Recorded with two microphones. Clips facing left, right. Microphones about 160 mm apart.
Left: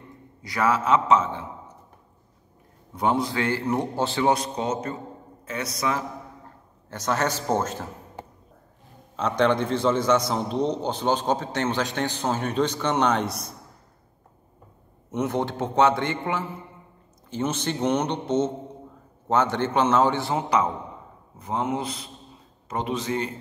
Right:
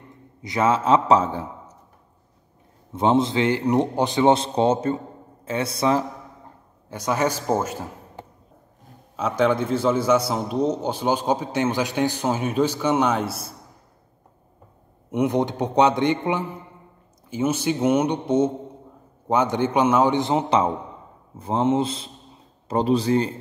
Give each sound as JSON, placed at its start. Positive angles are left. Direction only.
{"t": 0.4, "sound": "a man's voice", "side_deg": -20}
{"t": 2.9, "sound": "a man's voice", "side_deg": -25}
{"t": 6.9, "sound": "a man's voice", "side_deg": -10}
{"t": 9.1, "sound": "a man's voice", "side_deg": -5}
{"t": 15.0, "sound": "a man's voice", "side_deg": -15}